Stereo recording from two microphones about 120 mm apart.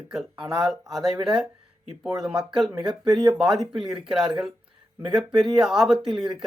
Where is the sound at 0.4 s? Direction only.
5° right (ahead or behind).